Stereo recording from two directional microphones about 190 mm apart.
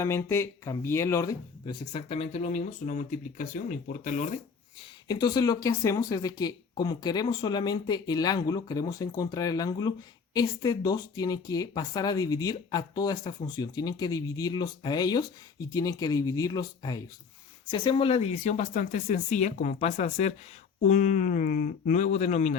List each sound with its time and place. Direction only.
0.0 s speech: 15° left (ahead or behind); by 4.4 s 40° left (ahead or behind)
5.0 s speech: 20° left (ahead or behind); by 22.5 s 35° left (ahead or behind)